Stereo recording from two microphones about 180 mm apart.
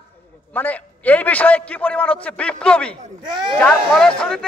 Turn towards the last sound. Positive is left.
turn(degrees=5)  # may be behind; listen again after turning